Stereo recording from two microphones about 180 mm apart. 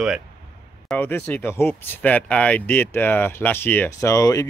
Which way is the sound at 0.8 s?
10° left (ahead or behind).